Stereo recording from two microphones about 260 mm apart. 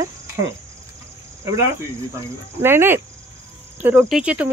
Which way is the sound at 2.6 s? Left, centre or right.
Centre.